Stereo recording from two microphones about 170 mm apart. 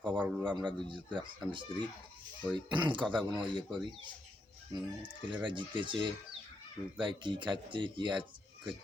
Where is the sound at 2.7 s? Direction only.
30° right (ahead or behind).